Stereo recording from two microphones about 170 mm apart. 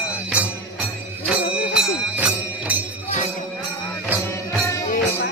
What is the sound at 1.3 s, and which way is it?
Jingle bell, 5° right (ahead or behind).